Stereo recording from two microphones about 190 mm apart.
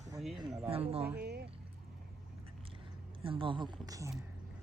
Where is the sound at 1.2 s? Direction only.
55° right (ahead or behind).